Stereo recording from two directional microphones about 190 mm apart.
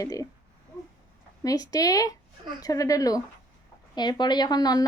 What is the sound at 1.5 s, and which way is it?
A woman's voice, 20° left (ahead or behind).